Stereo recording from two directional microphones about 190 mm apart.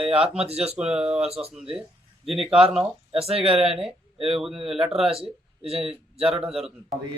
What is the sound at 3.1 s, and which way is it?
Speech, 30° right (ahead or behind).